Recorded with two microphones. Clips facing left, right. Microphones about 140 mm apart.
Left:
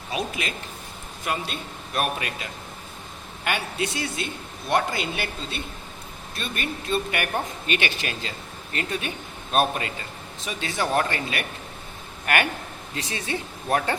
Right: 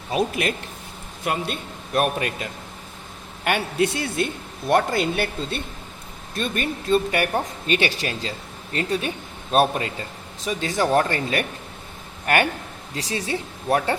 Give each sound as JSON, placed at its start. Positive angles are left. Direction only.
{"t": 0.1, "sound": "a man's voice", "side_deg": -55}
{"t": 6.3, "sound": "a man's voice", "side_deg": -40}